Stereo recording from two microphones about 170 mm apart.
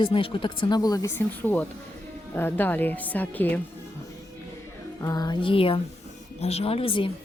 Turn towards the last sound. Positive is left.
turn(degrees=30)  # may be behind; listen again after turning